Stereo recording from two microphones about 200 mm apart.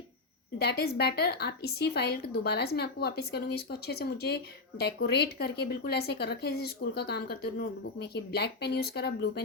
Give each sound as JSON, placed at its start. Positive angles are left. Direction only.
{"t": 0.6, "sound": "a woman's voice", "side_deg": 55}